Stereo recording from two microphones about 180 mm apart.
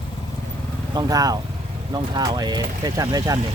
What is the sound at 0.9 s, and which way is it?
Speech, 20° right (ahead or behind).